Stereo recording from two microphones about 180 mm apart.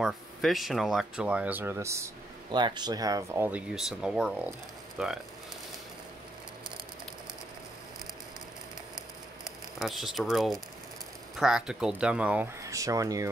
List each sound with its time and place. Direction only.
0.0 s speech: centre (ahead or behind)
9.8 s speech: centre (ahead or behind); by 13.3 s 20° right (ahead or behind)